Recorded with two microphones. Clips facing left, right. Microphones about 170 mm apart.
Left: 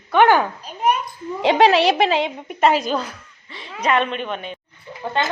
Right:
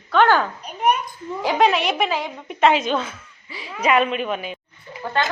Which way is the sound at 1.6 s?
90° left.